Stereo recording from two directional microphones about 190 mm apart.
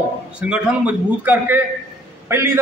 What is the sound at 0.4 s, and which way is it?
A man's voice, 5° right (ahead or behind).